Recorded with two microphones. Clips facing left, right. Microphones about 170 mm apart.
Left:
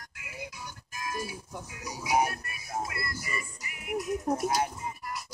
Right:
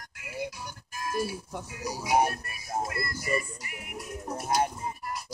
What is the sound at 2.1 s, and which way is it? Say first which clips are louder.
Speech: right 2 dB; 30° right (ahead or behind).